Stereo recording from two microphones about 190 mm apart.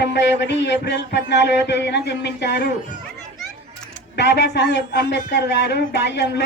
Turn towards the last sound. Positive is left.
turn(degrees=65)  # may be behind; listen again after turning